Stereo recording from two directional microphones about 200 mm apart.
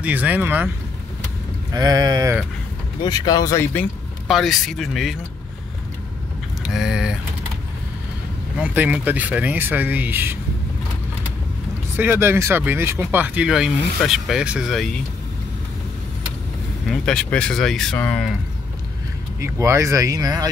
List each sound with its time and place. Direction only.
0.0 s speech: 10° right (ahead or behind)
1.7 s a sound: 20° right (ahead or behind)
3.0 s speech: 20° left (ahead or behind)
4.3 s speech: centre (ahead or behind)
6.6 s vehicle: centre (ahead or behind)
8.5 s speech: 5° right (ahead or behind)
12.0 s speech: 10° right (ahead or behind)
16.8 s speech: centre (ahead or behind)
19.4 s speech: 15° right (ahead or behind)